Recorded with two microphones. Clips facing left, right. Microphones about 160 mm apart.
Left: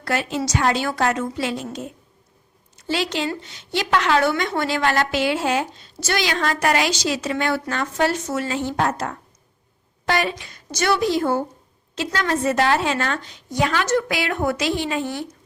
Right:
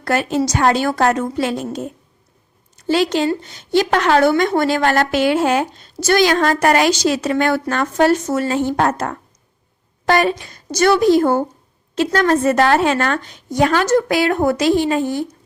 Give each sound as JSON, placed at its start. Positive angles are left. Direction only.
{"t": 0.0, "sound": "a woman's voice", "side_deg": -50}
{"t": 2.7, "sound": "a woman's voice", "side_deg": -45}